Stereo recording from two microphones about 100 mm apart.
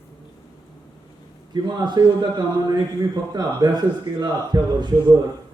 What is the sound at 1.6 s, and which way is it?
Speech, 45° right (ahead or behind).